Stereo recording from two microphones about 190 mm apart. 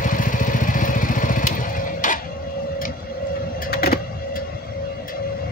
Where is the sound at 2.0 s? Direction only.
45° left (ahead or behind).